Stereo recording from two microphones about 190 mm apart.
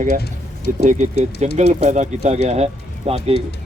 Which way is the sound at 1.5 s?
35° right (ahead or behind).